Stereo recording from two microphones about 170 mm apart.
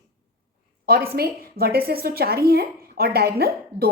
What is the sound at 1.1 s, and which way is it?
A woman's voice, 65° right (ahead or behind).